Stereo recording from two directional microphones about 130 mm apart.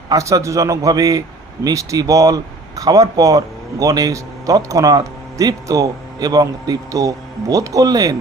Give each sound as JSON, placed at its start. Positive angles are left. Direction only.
{"t": 0.1, "sound": "speech", "side_deg": -25}